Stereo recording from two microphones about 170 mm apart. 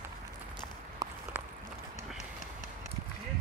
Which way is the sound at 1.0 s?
25° right (ahead or behind).